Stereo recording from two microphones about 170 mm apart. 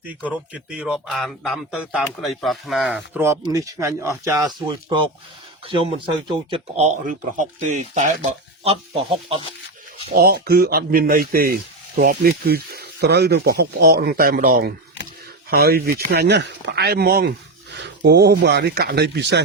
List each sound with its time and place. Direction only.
0.3 s speech: 10° right (ahead or behind); by 8.0 s 45° right (ahead or behind)
8.6 s speech: 35° right (ahead or behind)
10.2 s speech: 65° right (ahead or behind)
17.7 s speech: 85° right